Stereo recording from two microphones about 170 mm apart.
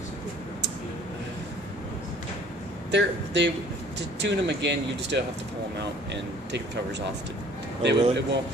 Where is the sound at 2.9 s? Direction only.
90° right.